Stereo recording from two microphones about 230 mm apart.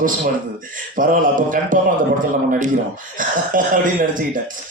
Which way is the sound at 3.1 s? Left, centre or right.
Right.